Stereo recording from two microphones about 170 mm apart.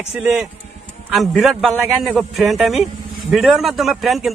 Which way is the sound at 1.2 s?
Centre (ahead or behind).